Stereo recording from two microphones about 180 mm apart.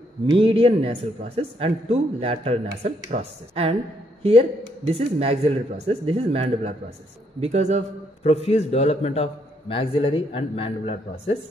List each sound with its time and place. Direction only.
0.3 s speech: 30° right (ahead or behind)
8.2 s a man's voice: 35° left (ahead or behind)